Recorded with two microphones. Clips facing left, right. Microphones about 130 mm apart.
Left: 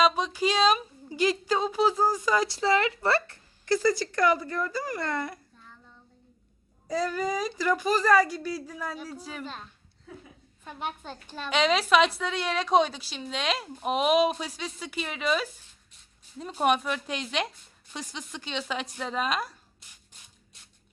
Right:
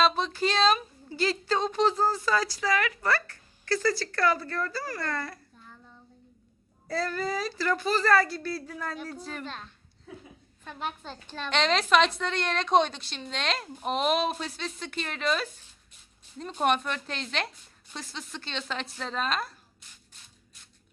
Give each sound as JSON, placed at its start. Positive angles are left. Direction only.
{"t": 0.0, "sound": "a woman's voice", "side_deg": 10}
{"t": 6.8, "sound": "a woman's voice", "side_deg": 15}